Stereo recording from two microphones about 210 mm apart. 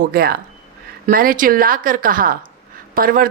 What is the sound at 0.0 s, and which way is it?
A woman's voice, 45° right (ahead or behind).